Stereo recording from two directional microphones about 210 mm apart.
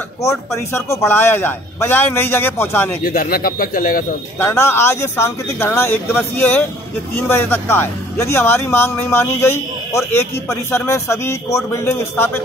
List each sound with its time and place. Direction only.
0.2 s speech: 15° left (ahead or behind)
3.0 s speech: 45° left (ahead or behind)
4.4 s speech: 10° left (ahead or behind)